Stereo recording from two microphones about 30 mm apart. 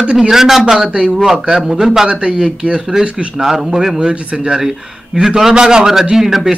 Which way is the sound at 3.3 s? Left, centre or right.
Centre.